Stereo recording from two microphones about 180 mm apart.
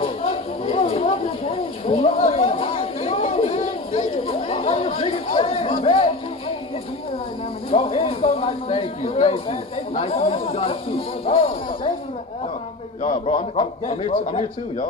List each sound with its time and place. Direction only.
0.0 s a sound: 30° left (ahead or behind)
7.7 s speech: 30° left (ahead or behind)
13.0 s a man's voice: 35° left (ahead or behind)